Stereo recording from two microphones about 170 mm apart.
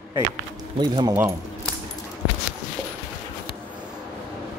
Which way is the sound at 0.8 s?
25° right (ahead or behind).